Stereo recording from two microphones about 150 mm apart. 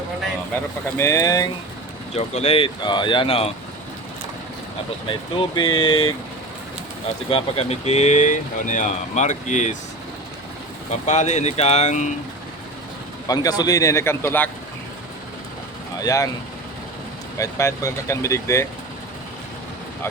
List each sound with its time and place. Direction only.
0.9 s speech: 20° left (ahead or behind)
2.1 s speech: 45° left (ahead or behind)
5.0 s speech: 30° left (ahead or behind)
7.3 s speech: 40° left (ahead or behind)
11.0 s speech: 50° left (ahead or behind)
13.2 s speech: 25° left (ahead or behind)
16.0 s speech: 25° left (ahead or behind)
17.3 s speech: 20° left (ahead or behind)